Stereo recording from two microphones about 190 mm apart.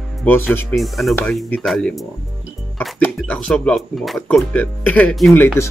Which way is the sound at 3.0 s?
5° left (ahead or behind).